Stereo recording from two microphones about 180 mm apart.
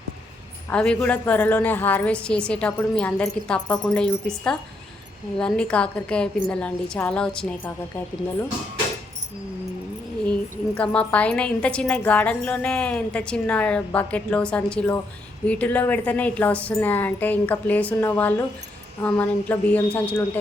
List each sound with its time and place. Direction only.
0.7 s a woman's voice: 5° left (ahead or behind)
10.8 s a woman's voice: 5° left (ahead or behind)